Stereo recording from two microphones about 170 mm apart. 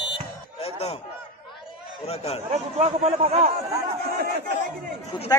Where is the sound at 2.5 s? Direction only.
40° right (ahead or behind).